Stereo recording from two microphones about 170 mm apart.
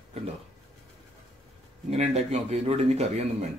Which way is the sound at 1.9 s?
40° right (ahead or behind).